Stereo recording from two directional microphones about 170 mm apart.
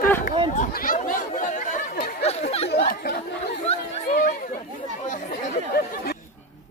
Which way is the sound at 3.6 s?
50° left (ahead or behind).